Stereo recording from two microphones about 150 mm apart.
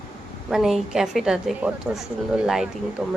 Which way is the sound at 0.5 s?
5° right (ahead or behind).